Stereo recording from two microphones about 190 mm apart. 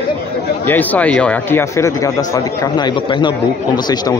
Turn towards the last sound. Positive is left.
turn(degrees=25)  # may be behind; listen again after turning